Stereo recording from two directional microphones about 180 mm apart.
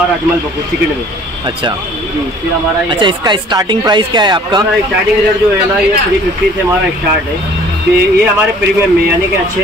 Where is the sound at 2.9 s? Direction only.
25° right (ahead or behind).